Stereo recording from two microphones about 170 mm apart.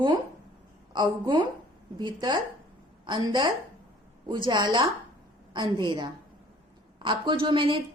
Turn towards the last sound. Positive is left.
turn(degrees=-30)  # may be behind; listen again after turning